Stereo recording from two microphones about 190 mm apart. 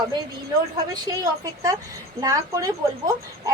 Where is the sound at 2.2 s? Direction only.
15° right (ahead or behind).